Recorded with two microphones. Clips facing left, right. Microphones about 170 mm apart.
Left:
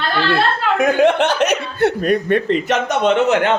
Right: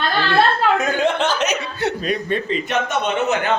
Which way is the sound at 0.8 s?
65° left (ahead or behind).